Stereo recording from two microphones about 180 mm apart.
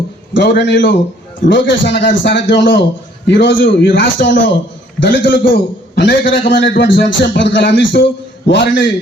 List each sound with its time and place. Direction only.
0.4 s a man's voice: 70° left (ahead or behind); by 5.2 s 90° left
5.4 s a man's voice: 65° left (ahead or behind); by 8.0 s 90° left
8.4 s a man's voice: 80° left